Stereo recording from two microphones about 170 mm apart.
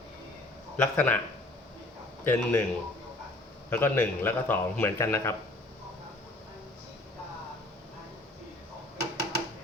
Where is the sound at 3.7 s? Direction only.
10° left (ahead or behind).